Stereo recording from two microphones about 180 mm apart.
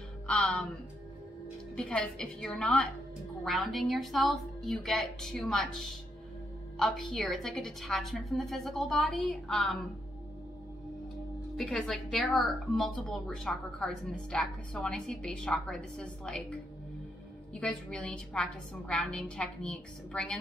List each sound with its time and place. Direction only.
0.3 s speech: 5° left (ahead or behind)
1.8 s a woman's voice: 5° left (ahead or behind)
11.5 s a woman's voice: centre (ahead or behind)
17.6 s a woman's voice: 5° left (ahead or behind)